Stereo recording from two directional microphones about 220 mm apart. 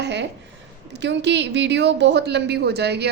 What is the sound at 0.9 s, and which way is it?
A woman's voice, 50° right (ahead or behind).